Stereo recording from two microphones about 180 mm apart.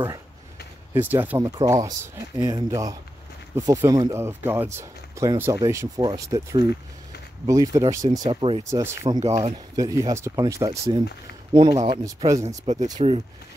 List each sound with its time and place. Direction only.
0.9 s speech: 10° right (ahead or behind)
1.4 s speech: 20° right (ahead or behind)
8.3 s speech: 30° right (ahead or behind)
8.6 s speech: 15° right (ahead or behind)
12.9 s speech: 35° right (ahead or behind)